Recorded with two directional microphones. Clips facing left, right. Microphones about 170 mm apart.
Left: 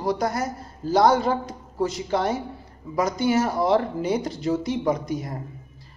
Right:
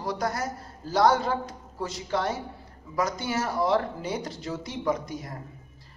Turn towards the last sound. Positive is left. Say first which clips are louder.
# left 4 dB
turn(degrees=20)  # may be behind; listen again after turning